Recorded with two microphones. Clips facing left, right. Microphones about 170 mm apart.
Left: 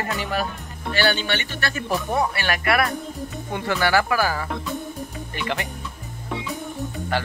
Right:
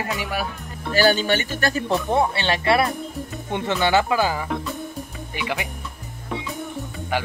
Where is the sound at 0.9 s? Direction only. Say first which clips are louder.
Right 4 dB; 40° right (ahead or behind).